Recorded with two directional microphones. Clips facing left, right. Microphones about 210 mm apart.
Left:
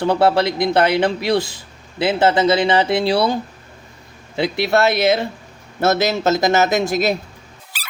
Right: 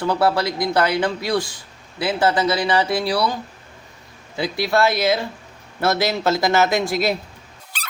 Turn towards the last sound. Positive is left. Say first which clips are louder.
# right 2 dB
turn(degrees=5)  # may be behind; listen again after turning